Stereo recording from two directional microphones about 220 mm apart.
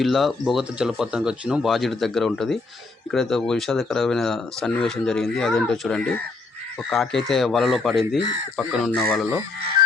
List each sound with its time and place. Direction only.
0.0 s speech: centre (ahead or behind)